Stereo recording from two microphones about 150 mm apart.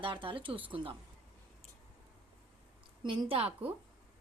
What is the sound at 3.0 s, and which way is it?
Speech, 35° right (ahead or behind).